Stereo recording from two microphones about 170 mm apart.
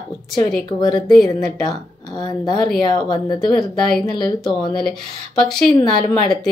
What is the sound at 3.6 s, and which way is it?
Speech, centre (ahead or behind).